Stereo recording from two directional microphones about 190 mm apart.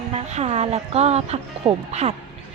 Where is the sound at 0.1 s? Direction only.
35° right (ahead or behind).